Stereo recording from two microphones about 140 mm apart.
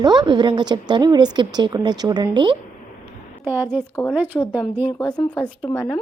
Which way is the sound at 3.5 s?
15° right (ahead or behind).